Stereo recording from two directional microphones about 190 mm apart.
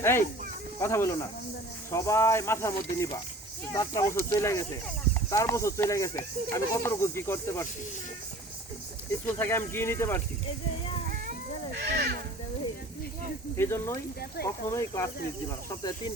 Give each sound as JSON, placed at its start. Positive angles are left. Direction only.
{"t": 0.0, "sound": "speech", "side_deg": 15}
{"t": 9.2, "sound": "speech", "side_deg": 10}
{"t": 11.8, "sound": "speech", "side_deg": -60}
{"t": 13.6, "sound": "speech", "side_deg": 15}